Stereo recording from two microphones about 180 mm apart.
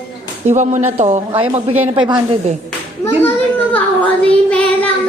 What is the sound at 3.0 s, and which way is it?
Speech, 15° left (ahead or behind).